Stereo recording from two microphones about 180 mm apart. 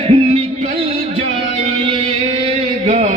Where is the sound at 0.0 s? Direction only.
35° right (ahead or behind).